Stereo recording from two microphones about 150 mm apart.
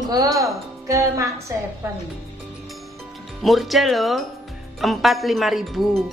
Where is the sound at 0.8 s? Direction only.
20° right (ahead or behind).